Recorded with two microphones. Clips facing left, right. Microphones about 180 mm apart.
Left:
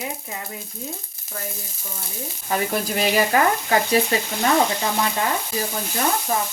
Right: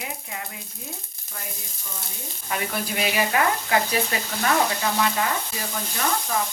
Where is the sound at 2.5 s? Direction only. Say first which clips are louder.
Left 5 dB; 35° left (ahead or behind).